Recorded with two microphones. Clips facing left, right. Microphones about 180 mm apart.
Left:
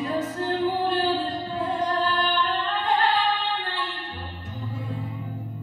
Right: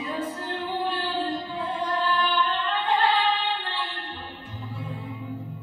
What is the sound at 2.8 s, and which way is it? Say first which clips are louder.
Child singing: even; 45° left (ahead or behind).